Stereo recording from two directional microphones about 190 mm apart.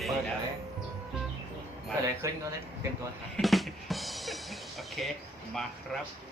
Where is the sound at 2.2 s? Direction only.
15° right (ahead or behind).